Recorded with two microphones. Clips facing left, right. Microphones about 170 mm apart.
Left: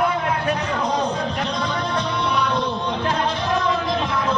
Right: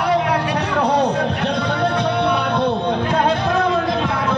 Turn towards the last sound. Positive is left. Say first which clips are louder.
# right 2 dB
turn(degrees=-65)  # may be behind; listen again after turning